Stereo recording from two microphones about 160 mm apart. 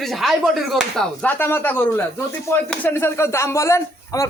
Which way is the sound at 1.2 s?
15° left (ahead or behind).